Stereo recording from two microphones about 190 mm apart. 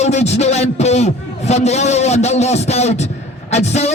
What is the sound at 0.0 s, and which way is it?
Speech, 35° left (ahead or behind).